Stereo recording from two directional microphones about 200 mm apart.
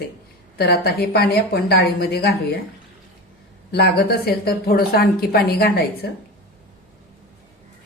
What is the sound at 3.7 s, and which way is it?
A woman's voice, 55° left (ahead or behind).